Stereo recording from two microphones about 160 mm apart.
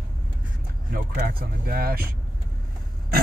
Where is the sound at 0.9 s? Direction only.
70° right (ahead or behind).